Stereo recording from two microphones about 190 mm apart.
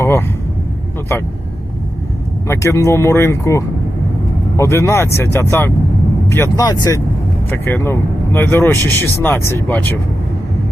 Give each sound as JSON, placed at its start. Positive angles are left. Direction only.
{"t": 0.0, "sound": "vehicle", "side_deg": 10}
{"t": 2.5, "sound": "speech", "side_deg": 15}